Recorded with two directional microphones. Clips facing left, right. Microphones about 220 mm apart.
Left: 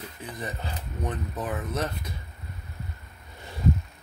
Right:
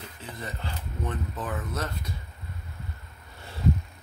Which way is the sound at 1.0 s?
20° left (ahead or behind).